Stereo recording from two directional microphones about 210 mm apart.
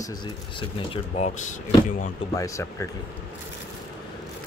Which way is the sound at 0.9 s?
35° left (ahead or behind).